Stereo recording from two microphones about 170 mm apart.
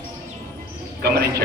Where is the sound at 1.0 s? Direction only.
70° right (ahead or behind).